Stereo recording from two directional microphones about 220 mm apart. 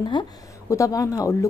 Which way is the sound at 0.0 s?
20° left (ahead or behind).